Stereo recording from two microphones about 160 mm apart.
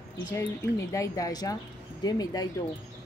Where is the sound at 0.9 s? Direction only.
20° left (ahead or behind).